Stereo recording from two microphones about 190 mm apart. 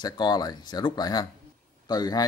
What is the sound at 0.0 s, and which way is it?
A man's voice, 20° left (ahead or behind).